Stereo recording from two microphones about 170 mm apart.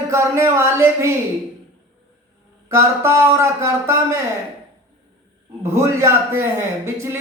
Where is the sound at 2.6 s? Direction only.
15° right (ahead or behind).